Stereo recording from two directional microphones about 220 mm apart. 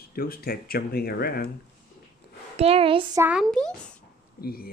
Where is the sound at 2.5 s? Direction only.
25° right (ahead or behind).